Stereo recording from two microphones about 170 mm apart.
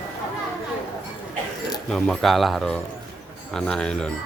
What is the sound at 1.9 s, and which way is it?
Speech, centre (ahead or behind).